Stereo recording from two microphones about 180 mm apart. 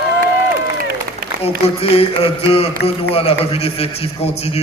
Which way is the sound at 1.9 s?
35° left (ahead or behind).